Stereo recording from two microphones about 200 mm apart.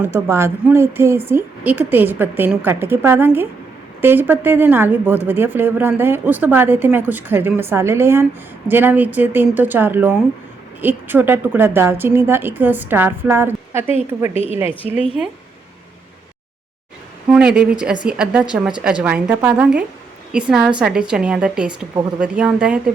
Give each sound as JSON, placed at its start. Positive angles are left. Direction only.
{"t": 0.0, "sound": "a woman's voice", "side_deg": -15}
{"t": 14.3, "sound": "speech", "side_deg": 30}
{"t": 14.6, "sound": "a woman's voice", "side_deg": -10}
{"t": 17.3, "sound": "a woman's voice", "side_deg": -5}